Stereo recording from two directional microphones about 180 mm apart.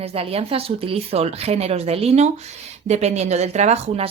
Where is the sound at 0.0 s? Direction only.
35° right (ahead or behind).